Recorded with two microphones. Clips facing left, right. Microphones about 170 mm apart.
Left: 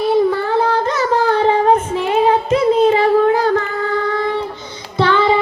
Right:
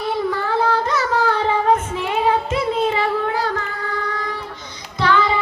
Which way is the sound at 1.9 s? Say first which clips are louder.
Left 5 dB; 25° left (ahead or behind).